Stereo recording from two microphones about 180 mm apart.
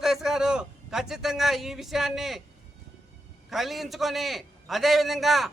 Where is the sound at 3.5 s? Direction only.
Centre (ahead or behind).